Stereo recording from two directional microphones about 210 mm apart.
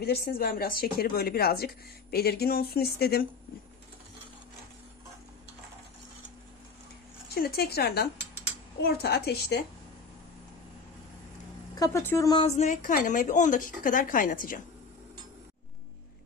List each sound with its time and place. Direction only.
0.0 s speech: 45° left (ahead or behind)
7.3 s speech: 45° left (ahead or behind)
11.7 s a woman's voice: 15° left (ahead or behind)
12.4 s a woman's voice: 35° left (ahead or behind)